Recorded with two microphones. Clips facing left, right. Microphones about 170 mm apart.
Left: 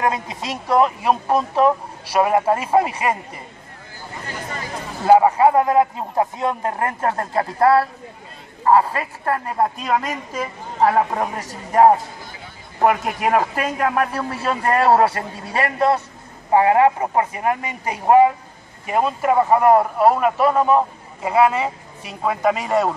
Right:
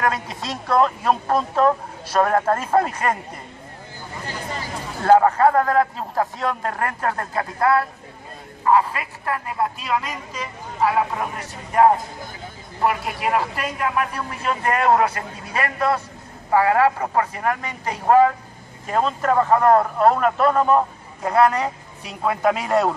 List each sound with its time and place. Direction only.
0.0 s a man's voice: 15° left (ahead or behind)
5.0 s a man's voice: 10° left (ahead or behind); by 11.2 s 45° left (ahead or behind)
12.8 s a man's voice: 45° left (ahead or behind); by 22.9 s centre (ahead or behind)